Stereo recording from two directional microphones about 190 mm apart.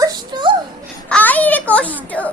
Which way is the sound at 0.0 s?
20° right (ahead or behind).